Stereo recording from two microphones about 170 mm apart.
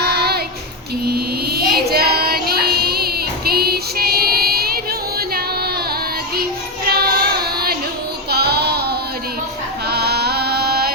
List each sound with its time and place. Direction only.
0.0 s child singing: 70° right (ahead or behind)
6.8 s child singing: 65° right (ahead or behind)
9.9 s music: 70° right (ahead or behind)